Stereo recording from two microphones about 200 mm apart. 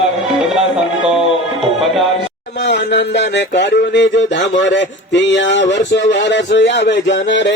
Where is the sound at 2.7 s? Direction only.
60° left (ahead or behind).